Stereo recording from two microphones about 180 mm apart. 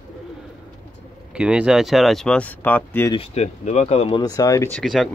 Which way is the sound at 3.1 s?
35° left (ahead or behind).